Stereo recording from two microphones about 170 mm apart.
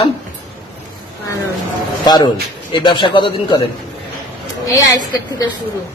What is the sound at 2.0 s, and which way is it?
A man's voice, 25° left (ahead or behind).